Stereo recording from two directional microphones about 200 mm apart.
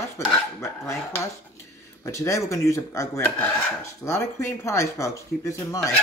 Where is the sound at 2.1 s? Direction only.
15° left (ahead or behind).